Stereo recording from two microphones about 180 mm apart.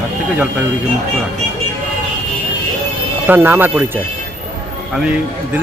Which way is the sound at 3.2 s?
10° right (ahead or behind).